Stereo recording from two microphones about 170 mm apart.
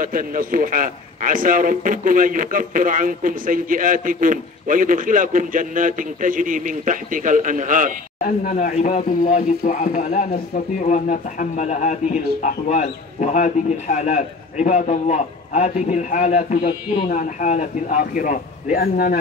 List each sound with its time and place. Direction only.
0.0 s a man's voice: 55° right (ahead or behind)
8.2 s a man's voice: 50° left (ahead or behind)